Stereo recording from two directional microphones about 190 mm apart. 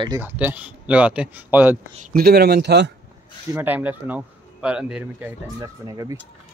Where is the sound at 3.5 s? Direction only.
10° right (ahead or behind).